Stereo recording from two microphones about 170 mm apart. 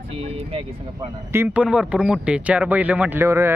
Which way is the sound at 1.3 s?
10° right (ahead or behind).